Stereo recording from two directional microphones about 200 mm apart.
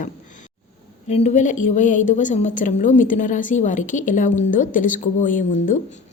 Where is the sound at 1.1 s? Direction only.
35° left (ahead or behind).